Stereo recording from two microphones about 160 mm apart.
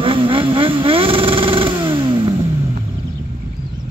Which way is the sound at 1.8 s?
30° right (ahead or behind).